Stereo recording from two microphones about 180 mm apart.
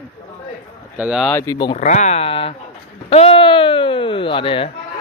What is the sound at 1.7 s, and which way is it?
A man's voice, 40° left (ahead or behind).